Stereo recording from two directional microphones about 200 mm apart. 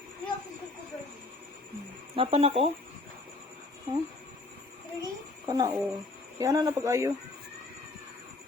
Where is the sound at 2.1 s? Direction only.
30° right (ahead or behind).